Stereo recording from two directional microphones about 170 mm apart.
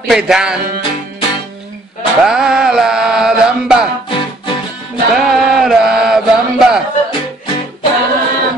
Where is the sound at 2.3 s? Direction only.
5° right (ahead or behind).